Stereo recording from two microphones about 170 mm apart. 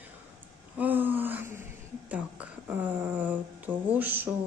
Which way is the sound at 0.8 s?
10° right (ahead or behind).